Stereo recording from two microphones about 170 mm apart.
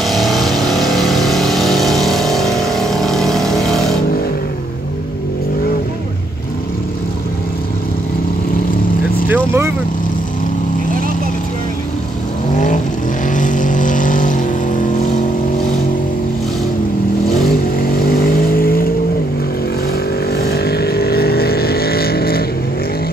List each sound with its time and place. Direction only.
0.0 s vehicle: centre (ahead or behind)
9.3 s vehicle: 15° right (ahead or behind)
12.5 s vehicle: 45° left (ahead or behind)
17.7 s vehicle: 60° left (ahead or behind)
20.3 s vehicle: 65° left (ahead or behind)